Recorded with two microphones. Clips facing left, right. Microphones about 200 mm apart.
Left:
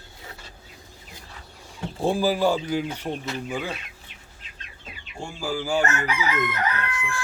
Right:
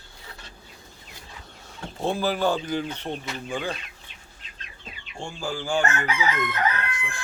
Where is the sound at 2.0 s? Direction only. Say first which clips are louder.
Left 3 dB; 10° left (ahead or behind).